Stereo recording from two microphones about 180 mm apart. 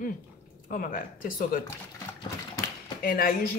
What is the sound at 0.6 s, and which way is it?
A woman's voice, 50° left (ahead or behind).